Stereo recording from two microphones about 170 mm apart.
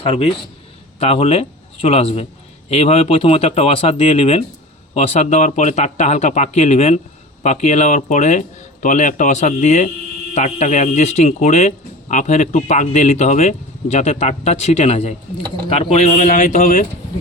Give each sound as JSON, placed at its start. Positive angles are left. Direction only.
{"t": 0.0, "sound": "a man's voice", "side_deg": 35}